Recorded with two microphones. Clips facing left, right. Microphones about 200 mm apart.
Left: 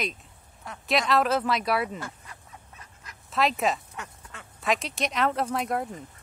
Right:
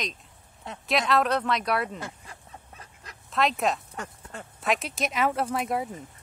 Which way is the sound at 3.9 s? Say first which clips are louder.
Right 4 dB; 35° right (ahead or behind).